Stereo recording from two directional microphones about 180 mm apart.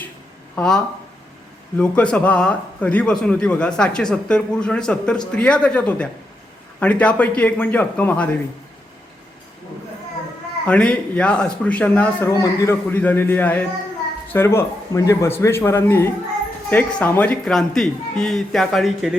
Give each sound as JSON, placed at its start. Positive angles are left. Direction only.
{"t": 0.5, "sound": "speech", "side_deg": 5}
{"t": 1.8, "sound": "a man's voice", "side_deg": 5}
{"t": 10.7, "sound": "a man's voice", "side_deg": 5}